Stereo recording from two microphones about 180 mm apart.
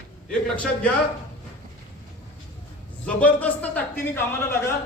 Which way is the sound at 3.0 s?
10° left (ahead or behind).